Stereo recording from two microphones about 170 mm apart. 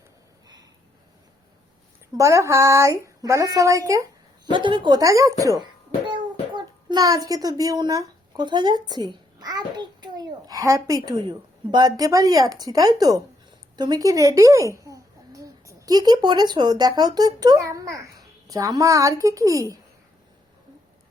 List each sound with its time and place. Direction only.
2.1 s a child's voice: 20° right (ahead or behind)